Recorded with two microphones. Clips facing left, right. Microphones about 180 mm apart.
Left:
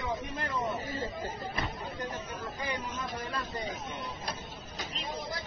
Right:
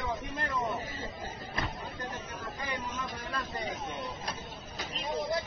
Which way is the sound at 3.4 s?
25° right (ahead or behind).